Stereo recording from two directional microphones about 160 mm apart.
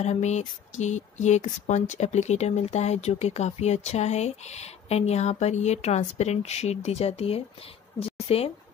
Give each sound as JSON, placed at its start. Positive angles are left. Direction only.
{"t": 0.0, "sound": "speech", "side_deg": 45}